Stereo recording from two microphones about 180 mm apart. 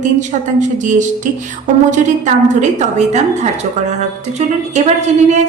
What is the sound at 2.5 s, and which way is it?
Speech, 40° right (ahead or behind).